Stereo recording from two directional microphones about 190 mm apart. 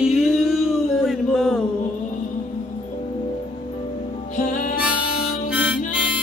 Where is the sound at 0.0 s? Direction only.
5° right (ahead or behind).